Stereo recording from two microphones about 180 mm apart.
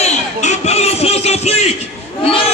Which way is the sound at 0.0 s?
40° left (ahead or behind).